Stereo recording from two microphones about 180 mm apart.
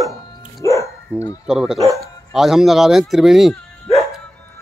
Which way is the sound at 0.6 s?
15° left (ahead or behind).